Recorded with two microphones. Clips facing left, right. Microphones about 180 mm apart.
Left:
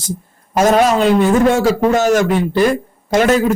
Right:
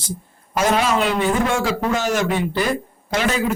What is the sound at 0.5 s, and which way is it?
A man's voice, 45° left (ahead or behind).